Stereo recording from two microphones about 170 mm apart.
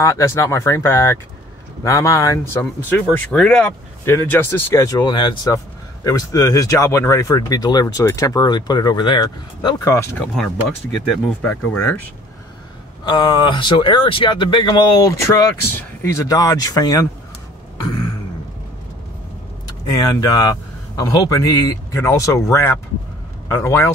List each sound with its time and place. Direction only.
0.0 s speech: 20° left (ahead or behind)
13.0 s speech: 25° left (ahead or behind)
19.9 s speech: 25° left (ahead or behind)